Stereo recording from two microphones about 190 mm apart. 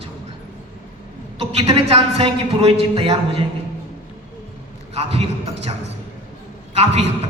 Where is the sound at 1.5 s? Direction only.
30° right (ahead or behind).